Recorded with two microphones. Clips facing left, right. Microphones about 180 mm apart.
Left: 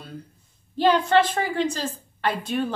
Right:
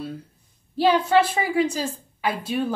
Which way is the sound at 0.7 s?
5° right (ahead or behind).